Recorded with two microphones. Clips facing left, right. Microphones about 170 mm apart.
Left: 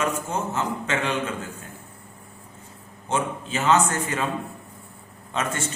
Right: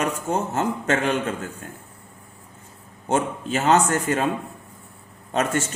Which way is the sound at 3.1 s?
40° right (ahead or behind).